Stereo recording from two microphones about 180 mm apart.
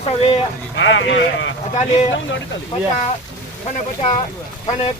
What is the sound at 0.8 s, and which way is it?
Speech, 90° left.